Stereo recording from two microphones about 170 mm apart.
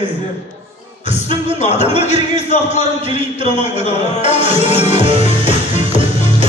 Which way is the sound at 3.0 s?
30° right (ahead or behind).